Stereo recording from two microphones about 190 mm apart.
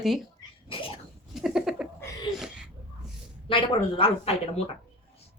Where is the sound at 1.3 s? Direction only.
5° right (ahead or behind).